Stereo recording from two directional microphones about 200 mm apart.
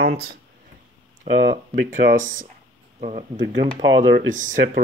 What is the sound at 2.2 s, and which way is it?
Speech, 40° right (ahead or behind).